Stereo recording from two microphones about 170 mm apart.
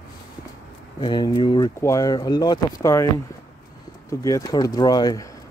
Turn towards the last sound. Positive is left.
turn(degrees=20)  # may be behind; listen again after turning